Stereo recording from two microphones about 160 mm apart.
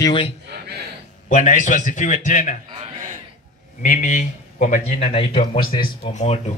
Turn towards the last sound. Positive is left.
turn(degrees=40)  # may be behind; listen again after turning